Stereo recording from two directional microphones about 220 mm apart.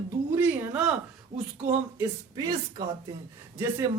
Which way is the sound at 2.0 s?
20° right (ahead or behind).